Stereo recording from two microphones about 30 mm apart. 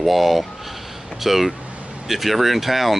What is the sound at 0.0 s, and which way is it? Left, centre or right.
Speech, centre.